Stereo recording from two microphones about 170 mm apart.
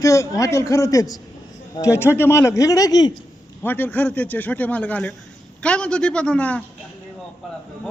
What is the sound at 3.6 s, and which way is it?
A man's voice, 10° left (ahead or behind).